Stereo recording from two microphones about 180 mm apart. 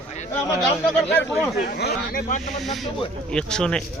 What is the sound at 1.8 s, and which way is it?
Speech, 65° left (ahead or behind).